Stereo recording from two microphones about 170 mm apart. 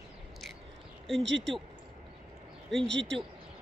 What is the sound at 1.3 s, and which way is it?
Speech, 90° right.